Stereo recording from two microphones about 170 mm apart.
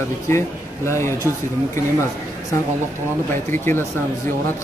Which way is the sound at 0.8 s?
15° left (ahead or behind).